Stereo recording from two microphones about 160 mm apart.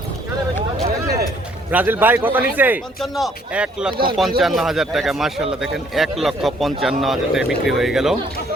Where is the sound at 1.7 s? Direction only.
10° right (ahead or behind).